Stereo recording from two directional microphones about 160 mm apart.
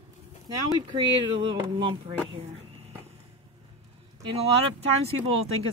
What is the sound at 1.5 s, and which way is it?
Speech, 30° right (ahead or behind).